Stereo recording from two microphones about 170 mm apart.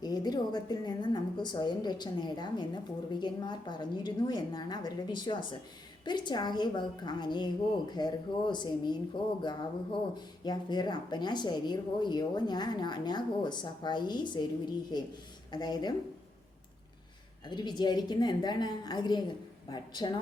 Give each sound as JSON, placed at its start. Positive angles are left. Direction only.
{"t": 0.0, "sound": "a woman's voice", "side_deg": 25}
{"t": 17.5, "sound": "a woman's voice", "side_deg": 25}